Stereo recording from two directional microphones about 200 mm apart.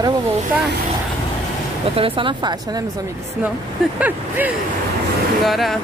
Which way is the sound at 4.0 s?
10° right (ahead or behind).